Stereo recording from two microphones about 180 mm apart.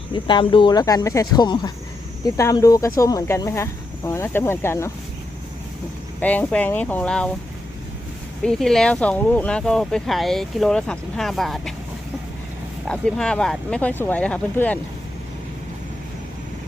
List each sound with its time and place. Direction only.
0.1 s speech: 25° left (ahead or behind)
6.1 s speech: 10° left (ahead or behind)
8.4 s speech: centre (ahead or behind)
12.9 s speech: 5° left (ahead or behind)